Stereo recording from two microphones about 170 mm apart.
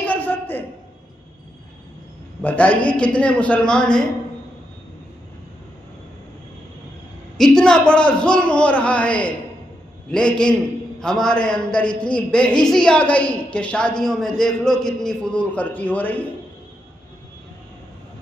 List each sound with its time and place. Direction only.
0.0 s a sound: 10° left (ahead or behind)
2.4 s a man's voice: 10° left (ahead or behind)
7.3 s a man's voice: 5° left (ahead or behind)